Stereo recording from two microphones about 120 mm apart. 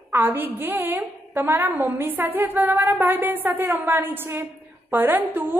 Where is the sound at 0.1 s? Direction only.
15° right (ahead or behind).